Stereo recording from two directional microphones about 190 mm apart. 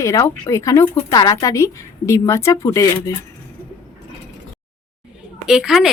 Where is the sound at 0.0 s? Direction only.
15° left (ahead or behind).